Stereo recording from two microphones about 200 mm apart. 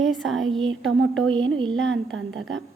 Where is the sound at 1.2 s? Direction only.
70° right (ahead or behind).